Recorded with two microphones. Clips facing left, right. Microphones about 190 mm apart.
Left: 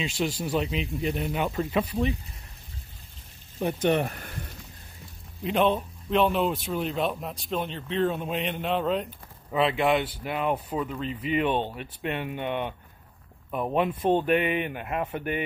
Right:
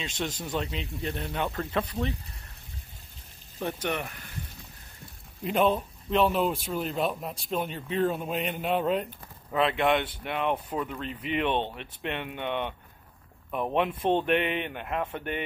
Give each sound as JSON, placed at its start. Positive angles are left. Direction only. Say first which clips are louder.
{"t": 0.0, "sound": "speech", "louder": "left 5 dB", "side_deg": 5}
{"t": 3.5, "sound": "speech", "louder": "left 7 dB", "side_deg": 25}
{"t": 4.0, "sound": "speech", "louder": "left 8 dB", "side_deg": 45}
{"t": 5.4, "sound": "speech", "louder": "left 1 dB", "side_deg": -5}